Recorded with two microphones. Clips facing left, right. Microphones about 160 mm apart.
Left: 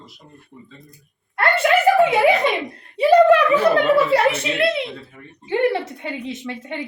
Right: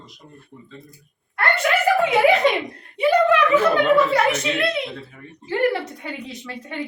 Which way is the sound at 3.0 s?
35° left (ahead or behind).